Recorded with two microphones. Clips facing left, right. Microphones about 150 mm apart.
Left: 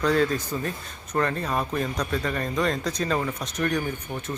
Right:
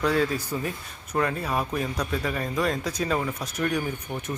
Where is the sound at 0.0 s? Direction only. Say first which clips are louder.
Left 2 dB; 5° right (ahead or behind).